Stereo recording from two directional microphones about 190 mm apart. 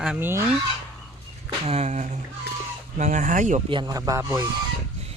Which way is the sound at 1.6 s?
35° right (ahead or behind).